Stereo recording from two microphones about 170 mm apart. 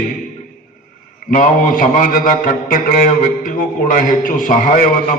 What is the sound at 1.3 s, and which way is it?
A man's voice, 50° left (ahead or behind).